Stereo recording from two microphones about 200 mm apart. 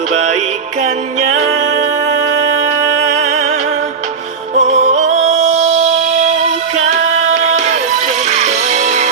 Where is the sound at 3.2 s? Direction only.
35° right (ahead or behind).